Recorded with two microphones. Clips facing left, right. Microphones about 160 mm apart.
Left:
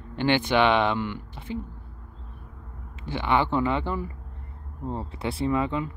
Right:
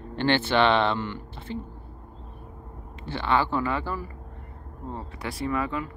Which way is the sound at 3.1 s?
15° left (ahead or behind).